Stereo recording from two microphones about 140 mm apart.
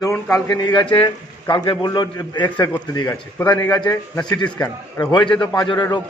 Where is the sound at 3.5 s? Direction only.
30° left (ahead or behind).